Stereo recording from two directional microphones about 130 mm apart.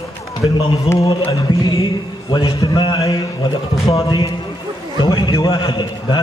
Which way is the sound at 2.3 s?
40° left (ahead or behind).